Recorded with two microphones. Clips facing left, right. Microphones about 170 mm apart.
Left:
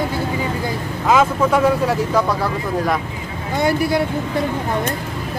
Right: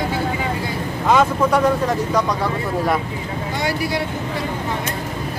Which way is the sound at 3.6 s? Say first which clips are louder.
Left 6 dB; 50° left (ahead or behind).